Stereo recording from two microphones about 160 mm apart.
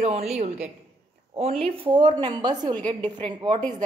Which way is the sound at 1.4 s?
40° right (ahead or behind).